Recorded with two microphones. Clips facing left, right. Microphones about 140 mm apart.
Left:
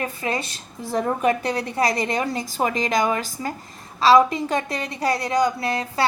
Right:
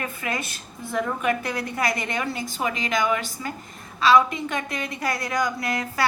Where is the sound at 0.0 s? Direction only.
30° left (ahead or behind).